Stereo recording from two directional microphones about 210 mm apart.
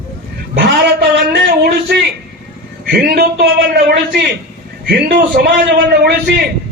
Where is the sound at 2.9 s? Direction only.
50° right (ahead or behind).